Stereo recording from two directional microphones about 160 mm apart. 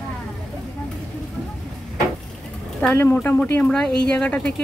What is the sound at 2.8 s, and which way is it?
Speech, 10° left (ahead or behind).